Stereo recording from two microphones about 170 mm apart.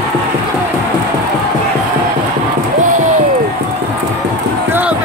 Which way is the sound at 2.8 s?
50° right (ahead or behind).